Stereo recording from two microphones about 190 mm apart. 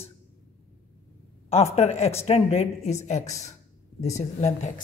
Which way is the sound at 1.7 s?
35° left (ahead or behind).